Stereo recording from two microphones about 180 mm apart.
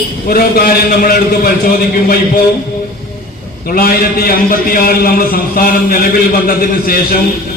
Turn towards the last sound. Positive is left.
turn(degrees=55)  # may be behind; listen again after turning